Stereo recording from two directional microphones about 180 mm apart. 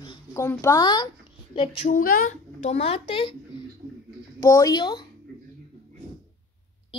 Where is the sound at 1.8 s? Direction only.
50° left (ahead or behind); by 3.3 s 30° left (ahead or behind).